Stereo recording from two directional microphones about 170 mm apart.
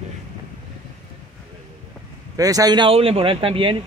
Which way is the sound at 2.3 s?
20° right (ahead or behind).